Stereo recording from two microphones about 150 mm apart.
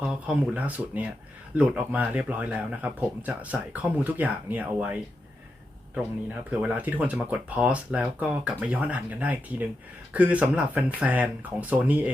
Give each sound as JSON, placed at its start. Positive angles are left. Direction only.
{"t": 0.0, "sound": "speech", "side_deg": -5}